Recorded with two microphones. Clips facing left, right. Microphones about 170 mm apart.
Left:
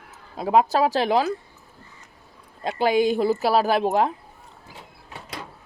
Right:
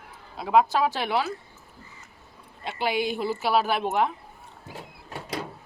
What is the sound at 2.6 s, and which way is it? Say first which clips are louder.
Speech: left 7 dB; 40° left (ahead or behind).